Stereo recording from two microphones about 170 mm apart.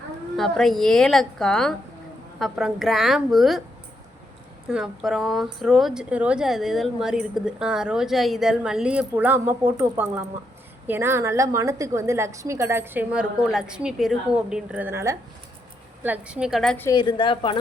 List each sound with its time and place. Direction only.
0.3 s a woman's voice: centre (ahead or behind)
4.7 s a woman's voice: centre (ahead or behind)
10.8 s a woman's voice: 15° right (ahead or behind)
16.9 s speech: 25° left (ahead or behind)